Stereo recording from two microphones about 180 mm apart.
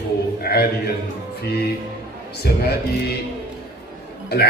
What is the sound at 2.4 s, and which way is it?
Speech, 60° left (ahead or behind).